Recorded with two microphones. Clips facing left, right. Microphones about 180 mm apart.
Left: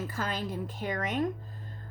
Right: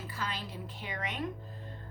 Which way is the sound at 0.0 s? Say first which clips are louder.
Left 6 dB; 45° left (ahead or behind).